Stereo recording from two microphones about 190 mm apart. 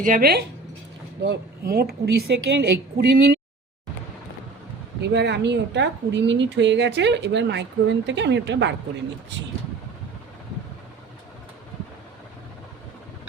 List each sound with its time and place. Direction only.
0.0 s a woman's voice: 50° right (ahead or behind)
5.0 s a woman's voice: 65° right (ahead or behind)